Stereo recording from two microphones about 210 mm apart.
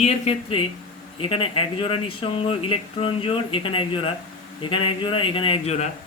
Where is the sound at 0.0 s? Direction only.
30° left (ahead or behind).